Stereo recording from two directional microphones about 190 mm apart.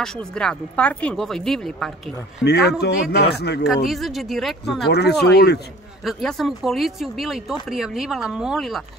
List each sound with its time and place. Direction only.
0.0 s speech: 5° left (ahead or behind)
2.4 s speech: 60° left (ahead or behind)
3.6 s speech: centre (ahead or behind)
4.8 s speech: 60° left (ahead or behind)
6.0 s speech: centre (ahead or behind)